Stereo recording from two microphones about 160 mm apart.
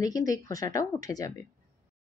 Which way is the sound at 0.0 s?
20° left (ahead or behind).